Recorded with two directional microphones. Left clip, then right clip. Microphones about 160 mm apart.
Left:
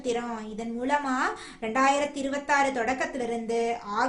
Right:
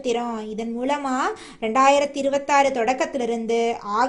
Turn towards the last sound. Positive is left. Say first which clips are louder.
# right 6 dB
turn(degrees=-40)  # may be behind; listen again after turning